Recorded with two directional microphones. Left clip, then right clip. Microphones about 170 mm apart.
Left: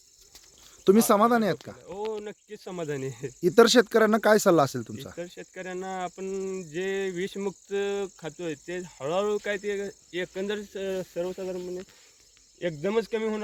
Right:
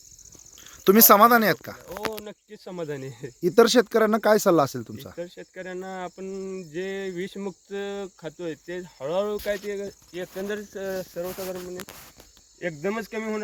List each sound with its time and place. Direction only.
0.9 s speech: 5° right (ahead or behind)
2.0 s speech: 20° left (ahead or behind)
3.4 s speech: centre (ahead or behind)
5.1 s speech: 20° left (ahead or behind)
10.1 s speech: 60° left (ahead or behind)
12.5 s speech: 90° left